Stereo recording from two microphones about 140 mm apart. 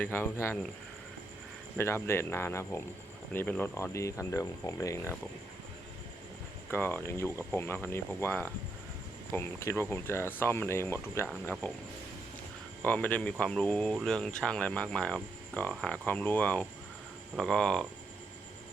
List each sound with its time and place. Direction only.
0.0 s speech: 15° left (ahead or behind)
1.8 s speech: 15° left (ahead or behind)
6.7 s speech: 15° left (ahead or behind)
12.8 s speech: 10° left (ahead or behind)